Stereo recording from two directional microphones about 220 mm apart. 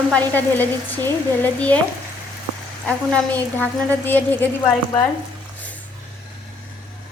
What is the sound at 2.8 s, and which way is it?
A woman's voice, 5° left (ahead or behind).